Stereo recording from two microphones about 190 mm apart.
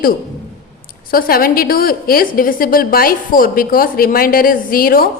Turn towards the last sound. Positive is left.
turn(degrees=50)  # may be behind; listen again after turning